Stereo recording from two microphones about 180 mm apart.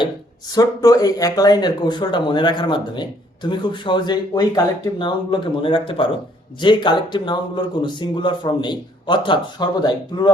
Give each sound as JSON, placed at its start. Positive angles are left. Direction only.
{"t": 0.0, "sound": "speech", "side_deg": 20}